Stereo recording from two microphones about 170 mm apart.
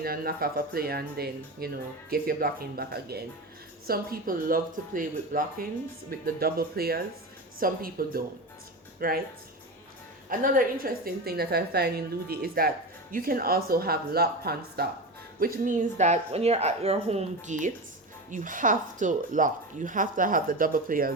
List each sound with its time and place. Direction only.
0.0 s a woman's voice: 60° right (ahead or behind)
10.2 s a woman's voice: 55° right (ahead or behind)